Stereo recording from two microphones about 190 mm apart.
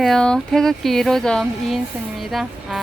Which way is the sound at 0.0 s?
5° left (ahead or behind).